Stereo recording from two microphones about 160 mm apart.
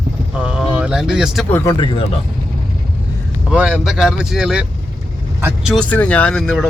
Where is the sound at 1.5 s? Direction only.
20° left (ahead or behind).